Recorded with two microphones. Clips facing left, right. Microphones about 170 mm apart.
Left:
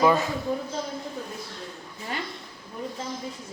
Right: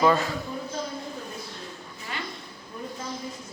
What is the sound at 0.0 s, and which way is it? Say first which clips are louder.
Speech: left 1 dB; 15° left (ahead or behind).